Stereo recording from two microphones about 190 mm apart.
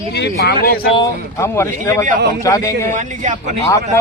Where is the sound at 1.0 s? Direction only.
15° left (ahead or behind).